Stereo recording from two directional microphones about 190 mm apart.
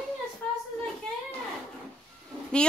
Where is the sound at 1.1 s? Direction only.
5° left (ahead or behind).